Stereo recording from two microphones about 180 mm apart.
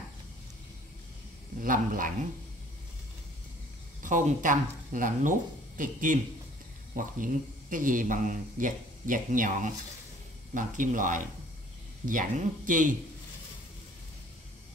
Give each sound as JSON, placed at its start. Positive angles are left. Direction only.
{"t": 1.6, "sound": "speech", "side_deg": -50}
{"t": 4.0, "sound": "speech", "side_deg": -45}